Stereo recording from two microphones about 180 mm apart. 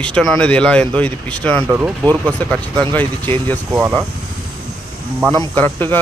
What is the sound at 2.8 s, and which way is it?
Speech, 10° left (ahead or behind).